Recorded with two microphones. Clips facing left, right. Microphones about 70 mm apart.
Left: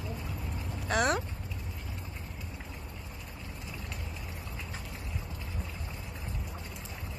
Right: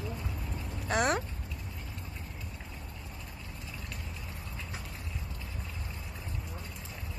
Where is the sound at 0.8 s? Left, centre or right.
Right.